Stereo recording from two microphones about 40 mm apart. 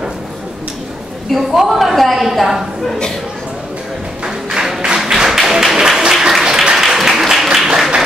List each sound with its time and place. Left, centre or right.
1.3 s a woman's voice: centre
4.5 s music: centre
4.8 s tap: centre
6.4 s applause: centre